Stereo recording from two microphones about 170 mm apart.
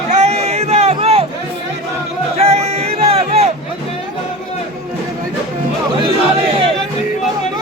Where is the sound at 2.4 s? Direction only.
40° right (ahead or behind).